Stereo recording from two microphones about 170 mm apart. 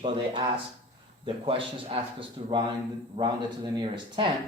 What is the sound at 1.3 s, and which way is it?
A man's voice, 30° right (ahead or behind).